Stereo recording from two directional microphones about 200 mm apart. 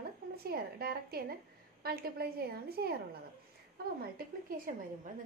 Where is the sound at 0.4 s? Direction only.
50° right (ahead or behind).